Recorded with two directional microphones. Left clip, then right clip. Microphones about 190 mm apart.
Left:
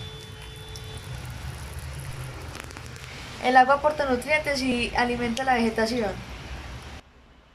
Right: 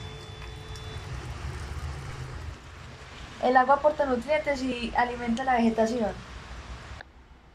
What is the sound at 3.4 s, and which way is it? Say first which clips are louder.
A woman's voice: left 3 dB; centre (ahead or behind).